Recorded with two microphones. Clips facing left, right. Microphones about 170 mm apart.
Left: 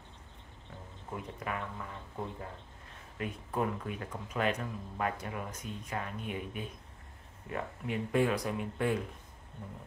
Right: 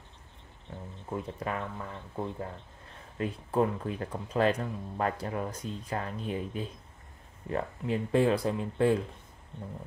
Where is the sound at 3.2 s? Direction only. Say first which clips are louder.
Right 6 dB; 30° right (ahead or behind).